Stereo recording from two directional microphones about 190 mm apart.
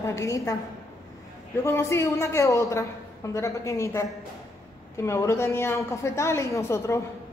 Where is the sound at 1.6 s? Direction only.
15° left (ahead or behind).